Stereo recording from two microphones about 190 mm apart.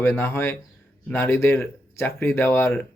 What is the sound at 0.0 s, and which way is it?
Speech, 15° left (ahead or behind).